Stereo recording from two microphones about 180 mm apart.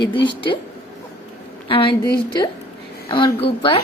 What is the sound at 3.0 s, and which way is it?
Speech, 25° left (ahead or behind).